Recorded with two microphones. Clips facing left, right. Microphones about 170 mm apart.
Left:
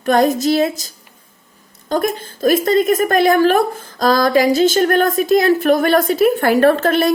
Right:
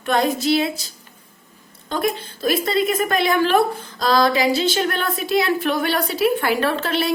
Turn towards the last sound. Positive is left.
turn(degrees=50)  # may be behind; listen again after turning